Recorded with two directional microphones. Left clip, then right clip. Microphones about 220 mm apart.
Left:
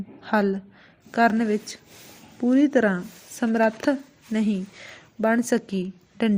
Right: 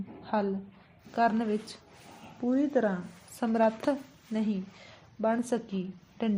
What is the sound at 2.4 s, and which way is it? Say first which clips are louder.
A woman's voice: left 8 dB; 45° left (ahead or behind).